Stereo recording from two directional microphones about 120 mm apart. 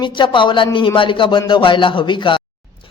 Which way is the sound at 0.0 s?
40° left (ahead or behind).